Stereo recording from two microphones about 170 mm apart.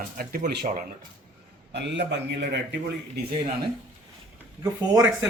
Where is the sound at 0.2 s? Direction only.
55° right (ahead or behind).